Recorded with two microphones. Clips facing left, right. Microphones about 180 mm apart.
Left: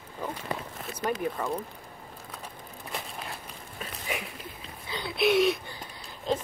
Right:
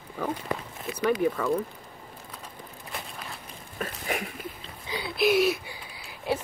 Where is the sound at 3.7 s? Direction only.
50° right (ahead or behind).